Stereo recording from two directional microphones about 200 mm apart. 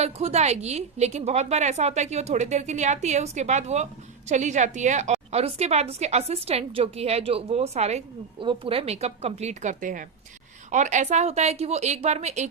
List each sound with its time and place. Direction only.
0.0 s a woman's voice: 30° right (ahead or behind)